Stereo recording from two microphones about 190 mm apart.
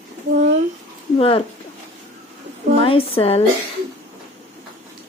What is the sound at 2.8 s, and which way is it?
Speech, 30° left (ahead or behind).